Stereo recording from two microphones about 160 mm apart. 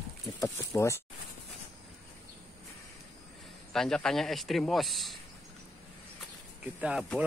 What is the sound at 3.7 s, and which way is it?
Speech, 5° left (ahead or behind).